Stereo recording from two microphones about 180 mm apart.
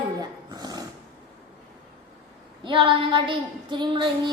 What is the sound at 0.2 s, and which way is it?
Dog, 20° right (ahead or behind).